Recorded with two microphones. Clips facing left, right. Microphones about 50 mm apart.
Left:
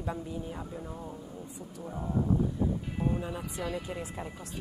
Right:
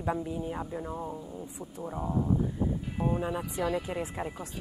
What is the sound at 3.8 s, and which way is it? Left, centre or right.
Speech, right.